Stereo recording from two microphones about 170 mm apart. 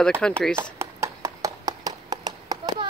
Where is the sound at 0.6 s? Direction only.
15° right (ahead or behind).